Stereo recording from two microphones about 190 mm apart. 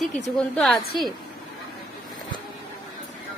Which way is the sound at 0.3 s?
5° left (ahead or behind).